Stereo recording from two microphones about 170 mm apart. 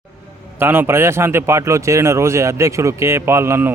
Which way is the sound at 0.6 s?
15° right (ahead or behind).